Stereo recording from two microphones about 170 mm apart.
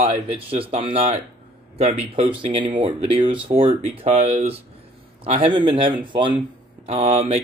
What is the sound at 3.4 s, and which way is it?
Speech, 30° right (ahead or behind).